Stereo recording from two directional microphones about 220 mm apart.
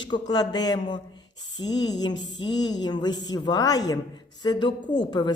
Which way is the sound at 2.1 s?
55° left (ahead or behind).